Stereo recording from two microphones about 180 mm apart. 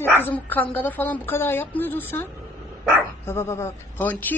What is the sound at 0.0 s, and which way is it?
A woman's voice, 10° left (ahead or behind).